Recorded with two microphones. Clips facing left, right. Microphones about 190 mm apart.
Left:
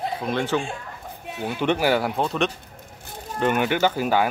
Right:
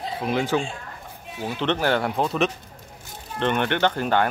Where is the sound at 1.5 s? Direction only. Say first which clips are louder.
Left 2 dB; 10° left (ahead or behind).